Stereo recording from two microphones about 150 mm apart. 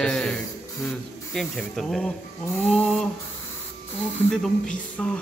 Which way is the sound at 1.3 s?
Centre (ahead or behind).